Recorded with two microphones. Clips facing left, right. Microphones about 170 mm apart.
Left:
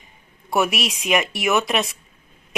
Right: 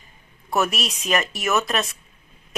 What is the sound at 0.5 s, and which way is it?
A woman's voice, 10° left (ahead or behind).